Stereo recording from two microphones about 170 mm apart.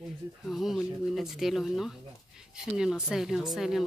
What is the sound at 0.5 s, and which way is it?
Speech, centre (ahead or behind).